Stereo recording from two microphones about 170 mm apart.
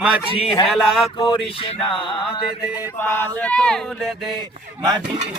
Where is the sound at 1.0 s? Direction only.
30° left (ahead or behind).